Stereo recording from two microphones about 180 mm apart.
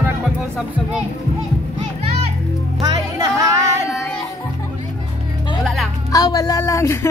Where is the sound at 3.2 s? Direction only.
15° right (ahead or behind).